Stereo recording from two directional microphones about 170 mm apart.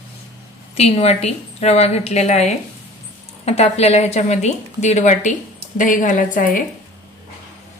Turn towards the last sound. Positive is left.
turn(degrees=50)  # may be behind; listen again after turning